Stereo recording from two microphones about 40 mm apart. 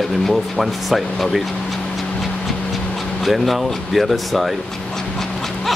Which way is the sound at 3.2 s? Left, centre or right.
Centre.